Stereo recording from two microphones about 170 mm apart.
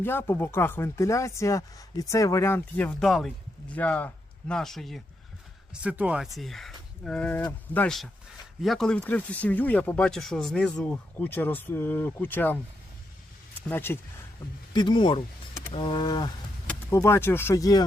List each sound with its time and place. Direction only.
0.0 s speech: 15° left (ahead or behind)
13.7 s speech: 10° left (ahead or behind)
14.7 s speech: 25° left (ahead or behind)